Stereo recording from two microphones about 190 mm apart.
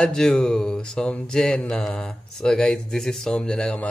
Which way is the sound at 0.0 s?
Centre (ahead or behind).